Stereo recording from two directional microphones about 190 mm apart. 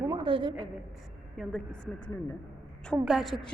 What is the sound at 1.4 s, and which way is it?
A woman's voice, 5° left (ahead or behind).